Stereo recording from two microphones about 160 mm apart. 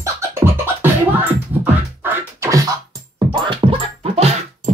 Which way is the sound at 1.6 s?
15° right (ahead or behind).